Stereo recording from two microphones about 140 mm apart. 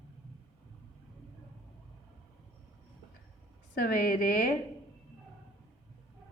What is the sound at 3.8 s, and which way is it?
Speech, 90° left.